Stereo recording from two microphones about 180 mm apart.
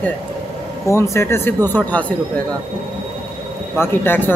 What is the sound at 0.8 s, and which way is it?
Speech, 15° left (ahead or behind).